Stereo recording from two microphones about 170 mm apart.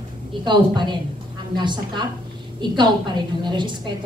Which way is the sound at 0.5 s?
25° right (ahead or behind).